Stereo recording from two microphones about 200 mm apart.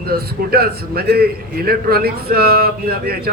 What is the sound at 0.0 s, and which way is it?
A man's voice, 50° right (ahead or behind).